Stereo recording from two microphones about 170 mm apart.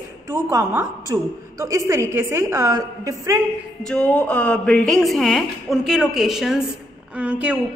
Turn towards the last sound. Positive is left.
turn(degrees=-10)  # may be behind; listen again after turning